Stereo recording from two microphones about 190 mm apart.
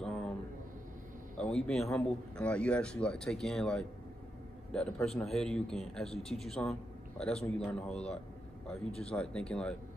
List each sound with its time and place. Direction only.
0.0 s a sound: 5° left (ahead or behind)
1.4 s a man's voice: centre (ahead or behind)
6.0 s speech: 30° left (ahead or behind)
6.4 s a man's voice: centre (ahead or behind)
9.0 s a man's voice: 5° left (ahead or behind)